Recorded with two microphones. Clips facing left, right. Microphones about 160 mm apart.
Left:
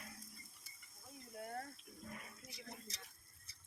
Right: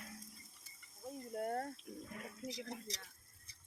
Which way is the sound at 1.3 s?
50° right (ahead or behind).